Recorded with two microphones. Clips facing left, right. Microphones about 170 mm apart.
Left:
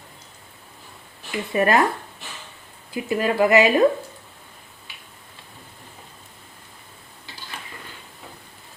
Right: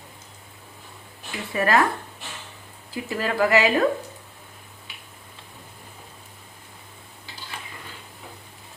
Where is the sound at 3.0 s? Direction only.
20° left (ahead or behind).